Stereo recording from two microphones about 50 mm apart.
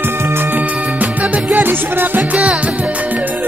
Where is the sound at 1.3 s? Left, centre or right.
Right.